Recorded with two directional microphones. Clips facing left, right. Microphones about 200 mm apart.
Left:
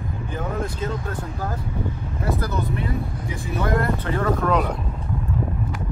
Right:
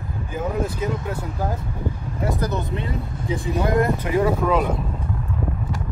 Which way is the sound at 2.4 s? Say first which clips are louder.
Right 1 dB; 20° right (ahead or behind).